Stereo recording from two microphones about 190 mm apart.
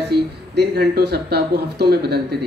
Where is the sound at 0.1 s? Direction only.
55° right (ahead or behind).